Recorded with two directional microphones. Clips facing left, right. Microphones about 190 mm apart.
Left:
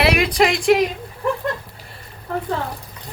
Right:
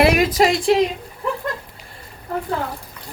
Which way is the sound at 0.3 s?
35° right (ahead or behind).